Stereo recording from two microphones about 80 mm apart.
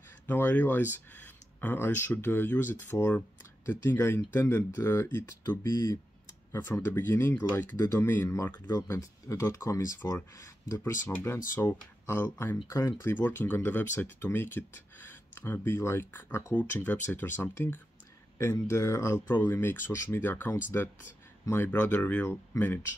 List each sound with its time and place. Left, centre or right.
0.3 s speech: left
5.6 s speech: left
6.7 s speech: left
10.8 s speech: left
13.0 s speech: left
16.5 s speech: left